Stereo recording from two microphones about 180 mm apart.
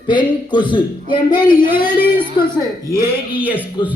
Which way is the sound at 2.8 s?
10° right (ahead or behind).